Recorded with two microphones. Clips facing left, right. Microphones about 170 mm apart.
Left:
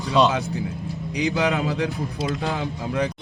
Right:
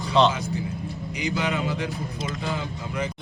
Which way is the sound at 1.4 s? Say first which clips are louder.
Left 4 dB; 70° left (ahead or behind).